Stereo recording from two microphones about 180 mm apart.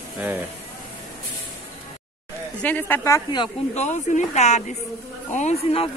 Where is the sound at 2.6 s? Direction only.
10° left (ahead or behind).